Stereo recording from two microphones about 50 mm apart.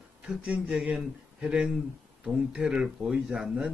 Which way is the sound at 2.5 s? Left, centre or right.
Centre.